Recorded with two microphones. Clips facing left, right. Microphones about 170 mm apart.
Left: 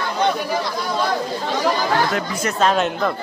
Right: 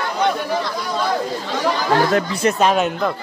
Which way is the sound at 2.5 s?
5° right (ahead or behind).